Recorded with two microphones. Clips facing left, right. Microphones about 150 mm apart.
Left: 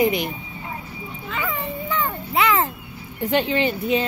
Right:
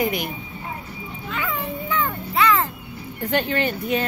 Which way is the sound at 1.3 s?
Centre (ahead or behind).